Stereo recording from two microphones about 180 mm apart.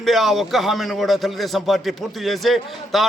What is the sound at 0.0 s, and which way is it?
A man's voice, centre (ahead or behind).